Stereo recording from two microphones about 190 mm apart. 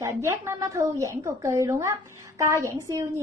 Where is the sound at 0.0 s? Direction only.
15° right (ahead or behind).